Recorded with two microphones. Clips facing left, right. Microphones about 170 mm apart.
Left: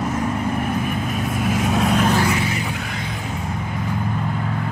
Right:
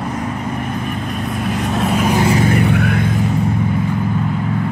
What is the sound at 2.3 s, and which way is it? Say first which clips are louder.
Vehicle: right 10 dB; 55° right (ahead or behind).